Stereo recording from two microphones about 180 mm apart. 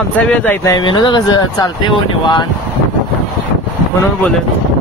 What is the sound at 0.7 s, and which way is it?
Speech, 25° left (ahead or behind).